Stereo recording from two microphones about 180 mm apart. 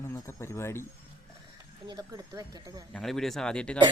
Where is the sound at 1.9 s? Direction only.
20° right (ahead or behind).